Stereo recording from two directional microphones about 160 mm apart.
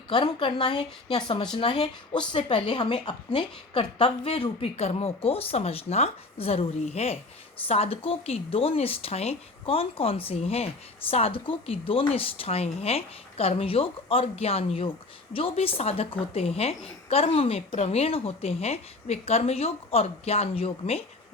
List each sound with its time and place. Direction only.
0.1 s speech: 30° left (ahead or behind)